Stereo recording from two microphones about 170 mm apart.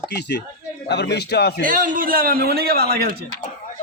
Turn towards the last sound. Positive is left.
turn(degrees=-65)  # may be behind; listen again after turning